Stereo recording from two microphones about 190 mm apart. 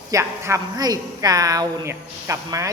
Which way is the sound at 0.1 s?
15° right (ahead or behind).